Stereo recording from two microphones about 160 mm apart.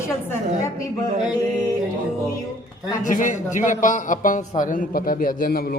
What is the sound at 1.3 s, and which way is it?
Speech, 25° left (ahead or behind).